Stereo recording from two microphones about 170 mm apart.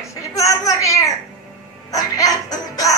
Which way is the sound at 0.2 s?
20° left (ahead or behind).